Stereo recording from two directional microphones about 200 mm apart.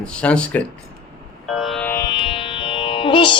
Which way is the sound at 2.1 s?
25° left (ahead or behind).